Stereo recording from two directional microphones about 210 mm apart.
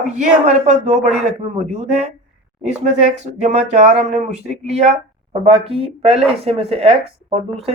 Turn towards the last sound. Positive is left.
turn(degrees=-30)  # may be behind; listen again after turning